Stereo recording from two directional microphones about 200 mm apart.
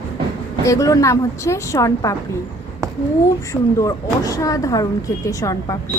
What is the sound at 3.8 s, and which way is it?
A woman's voice, 15° left (ahead or behind).